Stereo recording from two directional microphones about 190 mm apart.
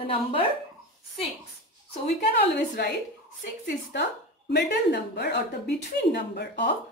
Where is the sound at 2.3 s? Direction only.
60° left (ahead or behind).